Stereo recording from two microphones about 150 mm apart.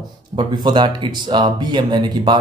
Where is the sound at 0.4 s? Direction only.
30° right (ahead or behind).